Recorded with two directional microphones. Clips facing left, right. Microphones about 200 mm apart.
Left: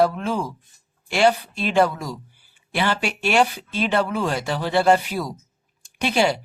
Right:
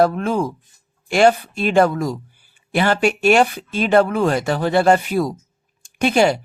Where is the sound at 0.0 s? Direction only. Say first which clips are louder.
Right 4 dB; 50° right (ahead or behind).